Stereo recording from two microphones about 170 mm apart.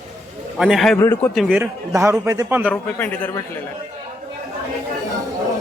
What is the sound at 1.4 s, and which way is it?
A man's voice, 10° right (ahead or behind).